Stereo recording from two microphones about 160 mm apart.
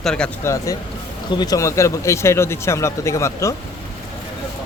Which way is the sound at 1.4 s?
20° left (ahead or behind).